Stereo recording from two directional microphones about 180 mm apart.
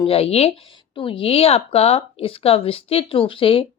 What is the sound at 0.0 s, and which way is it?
Speech, 30° left (ahead or behind).